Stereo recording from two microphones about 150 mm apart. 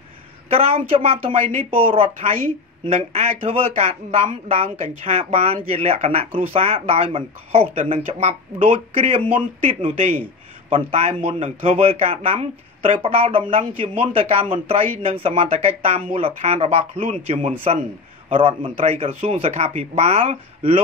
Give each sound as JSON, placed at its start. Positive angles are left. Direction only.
{"t": 0.5, "sound": "speech", "side_deg": -40}
{"t": 7.8, "sound": "a man's voice", "side_deg": -55}
{"t": 8.9, "sound": "a man's voice", "side_deg": -35}
{"t": 18.3, "sound": "a man's voice", "side_deg": -40}